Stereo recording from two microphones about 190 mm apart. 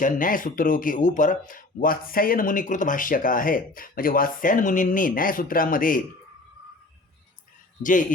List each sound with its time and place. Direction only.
0.0 s speech: 45° left (ahead or behind)
7.8 s speech: 45° left (ahead or behind)